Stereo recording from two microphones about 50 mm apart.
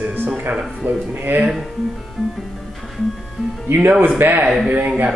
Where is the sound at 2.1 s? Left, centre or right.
Centre.